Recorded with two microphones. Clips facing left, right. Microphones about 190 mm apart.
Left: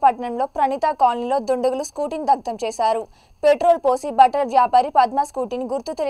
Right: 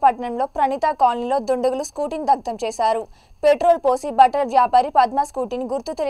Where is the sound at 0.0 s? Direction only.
Centre (ahead or behind).